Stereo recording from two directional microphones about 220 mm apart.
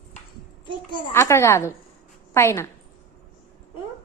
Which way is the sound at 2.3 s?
10° left (ahead or behind).